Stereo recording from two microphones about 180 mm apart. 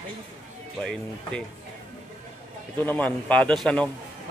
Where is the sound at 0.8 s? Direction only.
5° left (ahead or behind).